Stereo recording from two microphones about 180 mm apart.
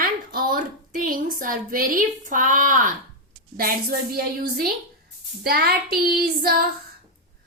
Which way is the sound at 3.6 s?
55° right (ahead or behind).